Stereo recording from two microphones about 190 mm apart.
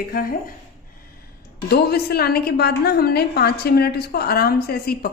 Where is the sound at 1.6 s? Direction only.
55° left (ahead or behind).